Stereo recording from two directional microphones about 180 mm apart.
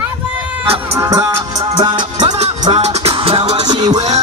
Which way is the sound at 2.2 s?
35° right (ahead or behind).